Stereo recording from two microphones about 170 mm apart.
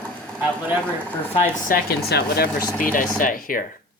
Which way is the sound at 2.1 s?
70° left (ahead or behind).